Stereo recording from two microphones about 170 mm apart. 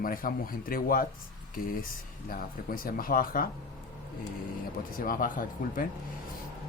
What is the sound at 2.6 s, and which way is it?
Speech, 60° left (ahead or behind).